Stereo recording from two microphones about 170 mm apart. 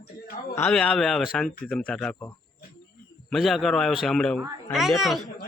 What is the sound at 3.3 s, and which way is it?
Speech, centre (ahead or behind).